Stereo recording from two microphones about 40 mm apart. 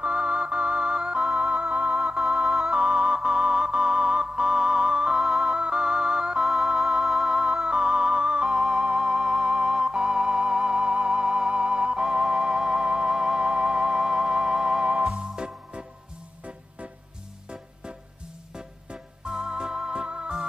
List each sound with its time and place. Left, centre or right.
0.0 s music: right
2.1 s music: centre
2.8 s music: right
6.4 s music: centre
7.6 s music: right
8.5 s music: centre
18.5 s music: centre